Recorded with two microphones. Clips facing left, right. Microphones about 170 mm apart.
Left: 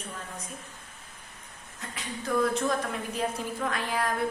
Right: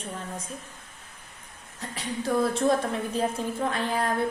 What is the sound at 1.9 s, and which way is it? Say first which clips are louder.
A woman's voice: right 3 dB; 35° right (ahead or behind).